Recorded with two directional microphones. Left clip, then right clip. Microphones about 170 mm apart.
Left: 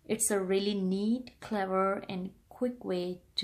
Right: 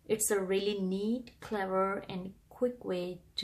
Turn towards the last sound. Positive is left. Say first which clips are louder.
# left 2 dB
turn(degrees=35)  # may be behind; listen again after turning